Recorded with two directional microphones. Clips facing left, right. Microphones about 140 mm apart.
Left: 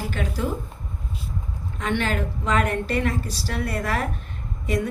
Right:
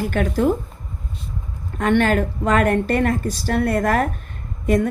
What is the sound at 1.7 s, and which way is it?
A woman's voice, 50° right (ahead or behind).